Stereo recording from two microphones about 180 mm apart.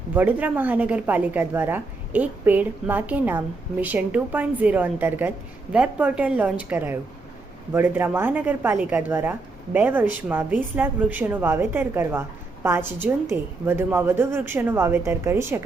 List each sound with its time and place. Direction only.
0.1 s a woman's voice: 10° right (ahead or behind)